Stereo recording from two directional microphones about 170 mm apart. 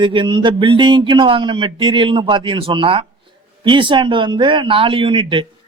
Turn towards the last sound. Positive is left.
turn(degrees=-30)  # may be behind; listen again after turning